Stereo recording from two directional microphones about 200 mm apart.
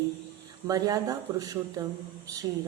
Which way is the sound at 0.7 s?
20° right (ahead or behind).